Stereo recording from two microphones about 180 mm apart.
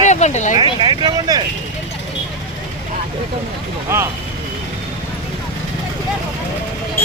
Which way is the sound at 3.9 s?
15° right (ahead or behind).